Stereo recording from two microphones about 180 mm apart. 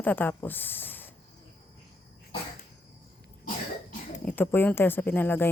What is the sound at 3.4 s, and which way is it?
Cough, 45° left (ahead or behind).